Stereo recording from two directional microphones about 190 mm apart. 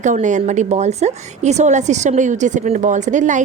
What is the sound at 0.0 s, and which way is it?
A woman's voice, 40° right (ahead or behind).